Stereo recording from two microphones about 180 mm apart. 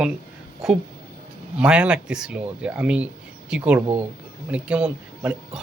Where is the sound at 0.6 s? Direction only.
Centre (ahead or behind).